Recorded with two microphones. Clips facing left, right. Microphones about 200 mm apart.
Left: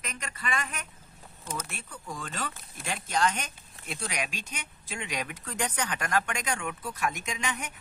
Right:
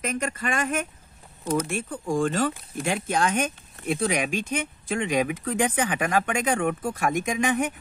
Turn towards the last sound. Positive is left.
turn(degrees=-50)  # may be behind; listen again after turning